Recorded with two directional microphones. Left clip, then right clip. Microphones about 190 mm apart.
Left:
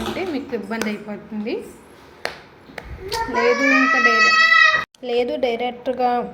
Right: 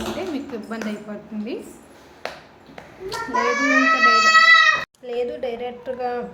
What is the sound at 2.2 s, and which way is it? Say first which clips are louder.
Ping: left 4 dB; 55° left (ahead or behind).